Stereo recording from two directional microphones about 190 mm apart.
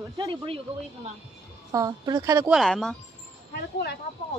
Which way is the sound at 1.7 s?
20° right (ahead or behind).